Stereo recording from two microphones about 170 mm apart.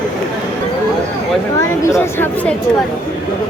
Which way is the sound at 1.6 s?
15° left (ahead or behind).